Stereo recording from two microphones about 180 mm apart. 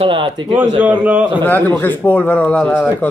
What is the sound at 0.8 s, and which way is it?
Speech, 5° right (ahead or behind).